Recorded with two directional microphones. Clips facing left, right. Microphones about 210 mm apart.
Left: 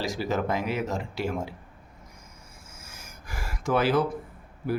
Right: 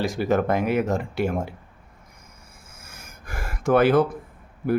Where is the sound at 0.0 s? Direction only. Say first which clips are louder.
Right 6 dB; 55° right (ahead or behind).